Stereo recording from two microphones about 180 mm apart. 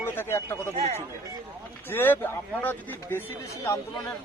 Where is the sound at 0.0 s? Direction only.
15° left (ahead or behind).